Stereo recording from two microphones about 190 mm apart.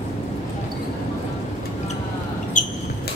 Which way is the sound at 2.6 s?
40° left (ahead or behind).